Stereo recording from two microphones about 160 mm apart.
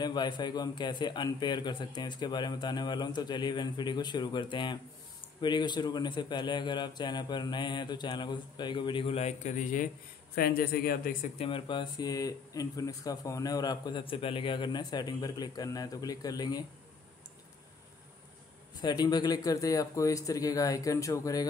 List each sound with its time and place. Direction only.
0.0 s speech: 25° left (ahead or behind); by 9.8 s 55° left (ahead or behind)
10.3 s a man's voice: 70° left (ahead or behind)
11.3 s speech: 35° left (ahead or behind)
18.8 s speech: 25° left (ahead or behind)